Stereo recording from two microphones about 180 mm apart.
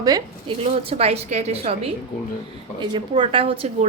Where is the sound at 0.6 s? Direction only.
35° right (ahead or behind).